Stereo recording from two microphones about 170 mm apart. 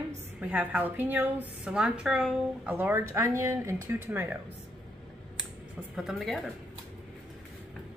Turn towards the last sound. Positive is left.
turn(degrees=0)  # may be behind; listen again after turning